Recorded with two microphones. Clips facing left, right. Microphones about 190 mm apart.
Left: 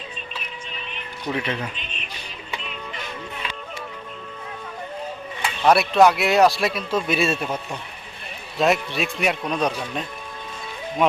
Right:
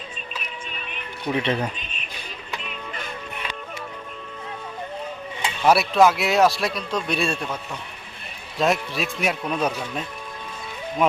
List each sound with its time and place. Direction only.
1.3 s speech: 25° right (ahead or behind)
5.6 s speech: centre (ahead or behind)
8.5 s speech: centre (ahead or behind)